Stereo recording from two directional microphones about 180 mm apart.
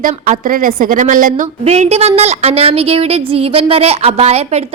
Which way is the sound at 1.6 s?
35° right (ahead or behind).